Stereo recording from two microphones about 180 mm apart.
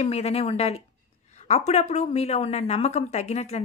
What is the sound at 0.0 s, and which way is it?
A woman's voice, 35° left (ahead or behind).